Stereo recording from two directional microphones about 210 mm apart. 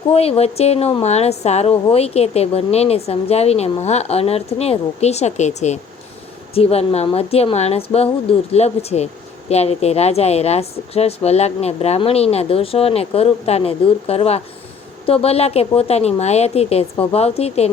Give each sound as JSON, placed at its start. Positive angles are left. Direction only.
{"t": 0.1, "sound": "a woman's voice", "side_deg": 30}